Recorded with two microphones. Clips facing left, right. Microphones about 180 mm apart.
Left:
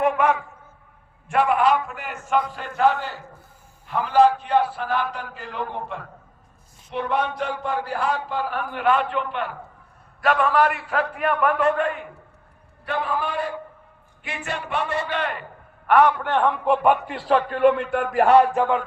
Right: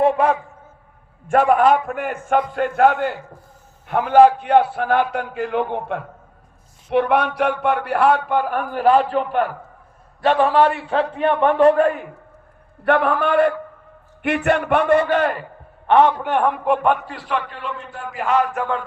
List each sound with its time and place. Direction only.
0.0 s a sound: 30° right (ahead or behind)
1.3 s a man's voice: 45° right (ahead or behind)
8.8 s a man's voice: 35° right (ahead or behind)
10.2 s a man's voice: 30° right (ahead or behind)
12.8 s a man's voice: 60° right (ahead or behind); by 15.4 s 45° right (ahead or behind)
15.9 s a man's voice: 25° right (ahead or behind)
16.6 s a man's voice: centre (ahead or behind)
17.2 s a sound: 30° left (ahead or behind)
17.5 s a man's voice: 60° left (ahead or behind)
18.3 s a sound: 30° left (ahead or behind)